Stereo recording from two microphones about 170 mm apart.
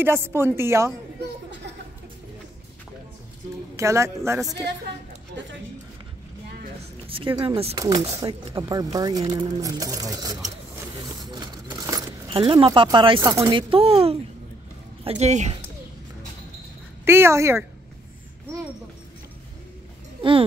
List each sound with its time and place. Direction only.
0.0 s a woman's voice: 15° right (ahead or behind)
3.7 s a woman's voice: 15° right (ahead or behind)
7.1 s speech: 30° right (ahead or behind)
7.7 s speech: 20° right (ahead or behind)
11.1 s a sound: 25° right (ahead or behind)
12.3 s speech: 30° right (ahead or behind)
17.0 s a woman's voice: 15° right (ahead or behind)
20.2 s a sound: 30° right (ahead or behind)